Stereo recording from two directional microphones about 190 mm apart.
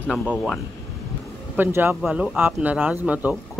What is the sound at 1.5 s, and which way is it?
Speech, 10° right (ahead or behind).